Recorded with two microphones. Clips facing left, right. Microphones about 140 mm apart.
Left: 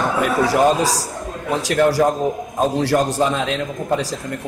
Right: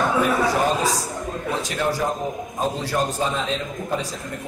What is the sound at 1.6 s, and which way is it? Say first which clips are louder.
A man's voice: left 10 dB; 80° left.